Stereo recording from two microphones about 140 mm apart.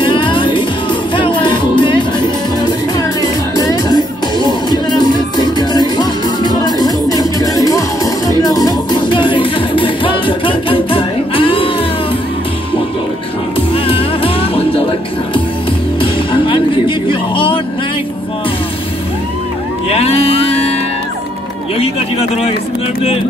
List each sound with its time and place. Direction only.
0.0 s music: 35° left (ahead or behind)
13.8 s music: 40° left (ahead or behind)
16.0 s music: 35° left (ahead or behind)
19.9 s music: 45° left (ahead or behind)